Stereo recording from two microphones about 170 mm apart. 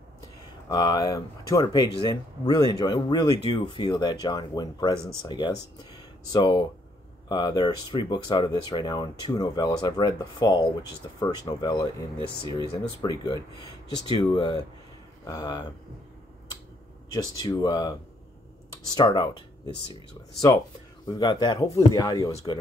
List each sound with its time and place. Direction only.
0.7 s speech: 20° left (ahead or behind)
17.1 s speech: 20° left (ahead or behind)
18.9 s speech: 25° left (ahead or behind)
21.1 s speech: 25° left (ahead or behind)